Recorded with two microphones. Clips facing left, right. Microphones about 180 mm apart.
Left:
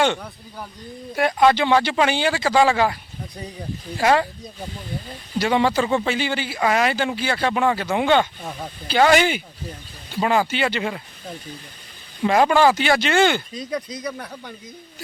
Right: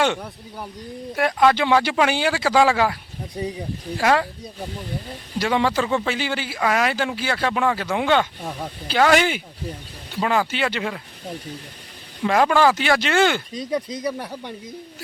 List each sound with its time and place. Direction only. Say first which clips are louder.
0.0 s speech: left 1 dB; 5° right (ahead or behind)
5.4 s speech: left 2 dB; centre (ahead or behind)
14.0 s speech: right 4 dB; 30° right (ahead or behind)